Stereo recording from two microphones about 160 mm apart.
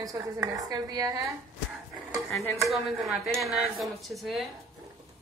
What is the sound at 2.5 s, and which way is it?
Speech, centre (ahead or behind).